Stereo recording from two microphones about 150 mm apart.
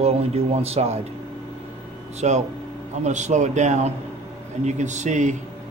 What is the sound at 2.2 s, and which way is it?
A man's voice, 50° right (ahead or behind).